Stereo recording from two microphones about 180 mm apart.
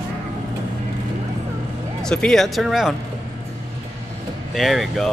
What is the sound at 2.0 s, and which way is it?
Speech, 5° left (ahead or behind).